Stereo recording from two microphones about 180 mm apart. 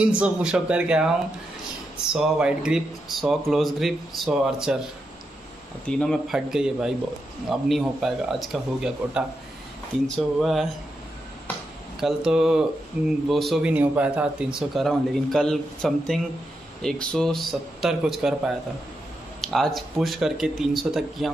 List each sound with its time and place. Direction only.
0.0 s speech: 5° right (ahead or behind)
2.1 s speech: 5° right (ahead or behind)
5.9 s speech: 5° left (ahead or behind)
12.0 s speech: 5° right (ahead or behind)